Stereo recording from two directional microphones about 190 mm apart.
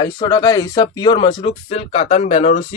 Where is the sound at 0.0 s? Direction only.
20° left (ahead or behind).